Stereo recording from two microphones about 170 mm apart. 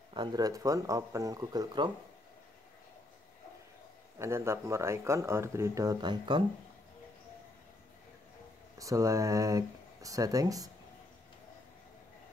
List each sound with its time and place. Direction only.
0.1 s speech: 25° right (ahead or behind)
4.2 s speech: 15° right (ahead or behind)
8.7 s speech: 20° right (ahead or behind)